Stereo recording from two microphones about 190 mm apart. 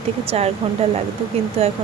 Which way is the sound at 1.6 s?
30° right (ahead or behind).